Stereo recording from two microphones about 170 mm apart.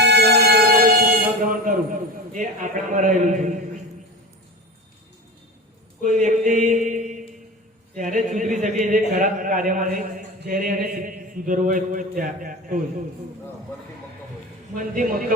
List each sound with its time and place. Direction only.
0.0 s buzzer: 75° right (ahead or behind); by 1.7 s 55° right (ahead or behind)
2.3 s a man's voice: 50° right (ahead or behind)
6.0 s a sound: 45° right (ahead or behind)
7.9 s a man's voice: 50° right (ahead or behind)
14.8 s a man's voice: 55° right (ahead or behind)